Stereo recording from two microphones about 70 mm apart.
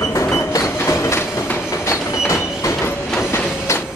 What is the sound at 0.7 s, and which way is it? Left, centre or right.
Train, left.